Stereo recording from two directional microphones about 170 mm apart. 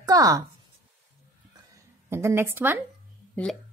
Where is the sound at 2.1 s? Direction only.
15° right (ahead or behind).